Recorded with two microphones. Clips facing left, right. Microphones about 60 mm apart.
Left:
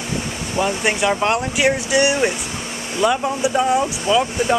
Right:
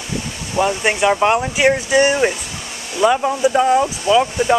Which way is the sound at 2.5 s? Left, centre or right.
Left.